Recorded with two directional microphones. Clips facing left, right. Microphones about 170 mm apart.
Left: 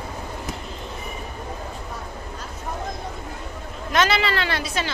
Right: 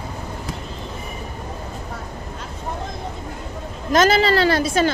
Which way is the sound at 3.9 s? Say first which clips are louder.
Right 6 dB; 40° right (ahead or behind).